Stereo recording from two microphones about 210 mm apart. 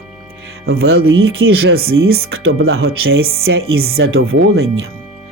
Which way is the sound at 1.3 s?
75° right (ahead or behind).